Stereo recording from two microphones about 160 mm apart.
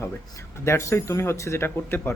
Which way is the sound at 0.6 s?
15° left (ahead or behind).